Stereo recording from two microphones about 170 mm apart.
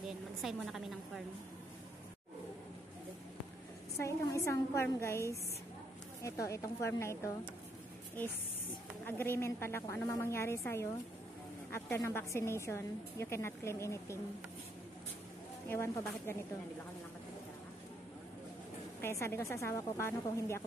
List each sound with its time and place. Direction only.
0.0 s a woman's voice: centre (ahead or behind)
3.9 s a woman's voice: 15° left (ahead or behind)
6.2 s a woman's voice: 20° left (ahead or behind)
9.0 s a woman's voice: 10° left (ahead or behind)
15.7 s a woman's voice: 15° left (ahead or behind)
18.9 s a woman's voice: 15° left (ahead or behind)